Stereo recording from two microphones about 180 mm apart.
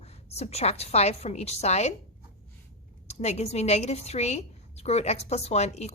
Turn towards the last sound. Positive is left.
turn(degrees=35)  # may be behind; listen again after turning